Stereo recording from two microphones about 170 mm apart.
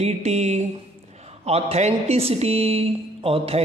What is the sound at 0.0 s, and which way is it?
Speech, 40° right (ahead or behind).